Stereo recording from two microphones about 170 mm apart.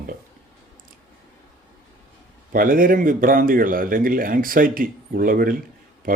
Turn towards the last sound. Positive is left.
turn(degrees=-55)  # may be behind; listen again after turning